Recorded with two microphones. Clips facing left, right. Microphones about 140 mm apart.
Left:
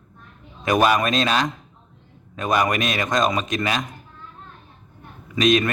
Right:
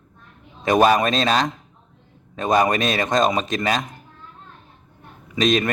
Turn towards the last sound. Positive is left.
turn(degrees=-35)  # may be behind; listen again after turning